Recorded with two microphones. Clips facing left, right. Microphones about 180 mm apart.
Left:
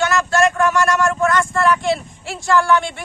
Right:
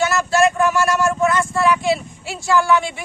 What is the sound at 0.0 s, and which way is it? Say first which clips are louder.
Vehicle: even; 5° right (ahead or behind).